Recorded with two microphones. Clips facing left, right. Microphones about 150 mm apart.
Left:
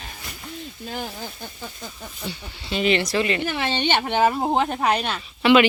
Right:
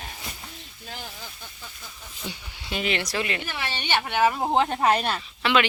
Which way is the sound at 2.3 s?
15° right (ahead or behind).